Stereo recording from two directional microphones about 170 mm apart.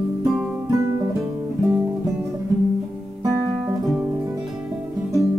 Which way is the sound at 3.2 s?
20° right (ahead or behind).